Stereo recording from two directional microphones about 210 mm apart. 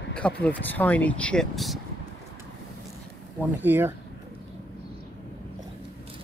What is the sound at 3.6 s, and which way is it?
Speech, 10° right (ahead or behind).